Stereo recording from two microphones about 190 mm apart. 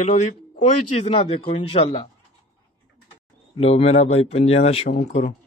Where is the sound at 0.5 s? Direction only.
30° left (ahead or behind).